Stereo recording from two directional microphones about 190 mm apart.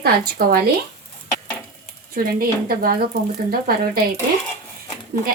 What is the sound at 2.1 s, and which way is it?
Speech, 50° right (ahead or behind).